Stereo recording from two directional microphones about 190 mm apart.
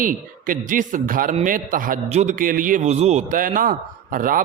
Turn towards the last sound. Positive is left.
turn(degrees=-45)  # may be behind; listen again after turning